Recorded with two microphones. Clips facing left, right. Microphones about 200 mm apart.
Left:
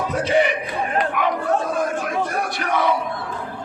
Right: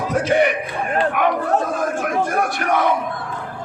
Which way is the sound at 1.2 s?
55° right (ahead or behind).